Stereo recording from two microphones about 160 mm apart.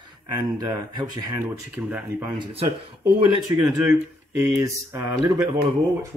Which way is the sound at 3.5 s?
20° right (ahead or behind).